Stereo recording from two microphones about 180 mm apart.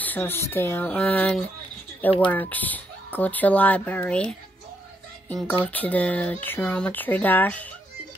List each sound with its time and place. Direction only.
0.0 s speech: 10° left (ahead or behind)
5.7 s speech: 10° left (ahead or behind)